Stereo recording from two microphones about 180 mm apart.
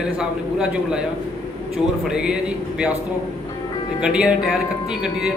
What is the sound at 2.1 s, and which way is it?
Speech, 5° right (ahead or behind).